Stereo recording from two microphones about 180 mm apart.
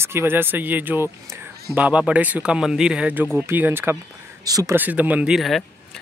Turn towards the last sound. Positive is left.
turn(degrees=0)  # may be behind; listen again after turning